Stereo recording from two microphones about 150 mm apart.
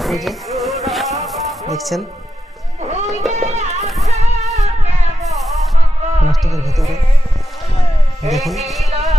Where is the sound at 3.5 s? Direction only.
45° right (ahead or behind).